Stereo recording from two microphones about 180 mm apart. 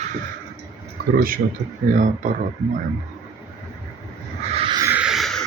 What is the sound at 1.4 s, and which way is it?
Speech, 55° right (ahead or behind).